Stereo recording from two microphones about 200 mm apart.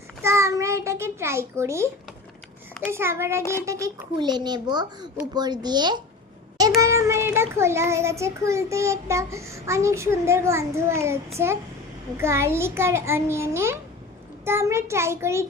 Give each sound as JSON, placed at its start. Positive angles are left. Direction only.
{"t": 0.2, "sound": "a sound", "side_deg": -15}
{"t": 2.8, "sound": "child singing", "side_deg": -10}
{"t": 3.7, "sound": "a child's voice", "side_deg": -15}
{"t": 6.7, "sound": "child singing", "side_deg": -15}